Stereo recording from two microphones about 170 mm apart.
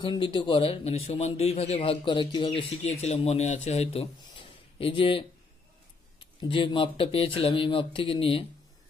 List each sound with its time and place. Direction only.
0.0 s a man's voice: 30° left (ahead or behind)